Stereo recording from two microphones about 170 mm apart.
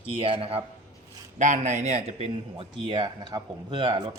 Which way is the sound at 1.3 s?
45° right (ahead or behind).